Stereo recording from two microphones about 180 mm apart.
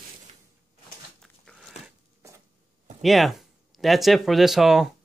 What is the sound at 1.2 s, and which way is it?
Dog, centre (ahead or behind).